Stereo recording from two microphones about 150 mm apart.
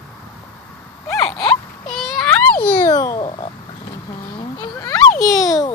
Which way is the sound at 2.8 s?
20° left (ahead or behind).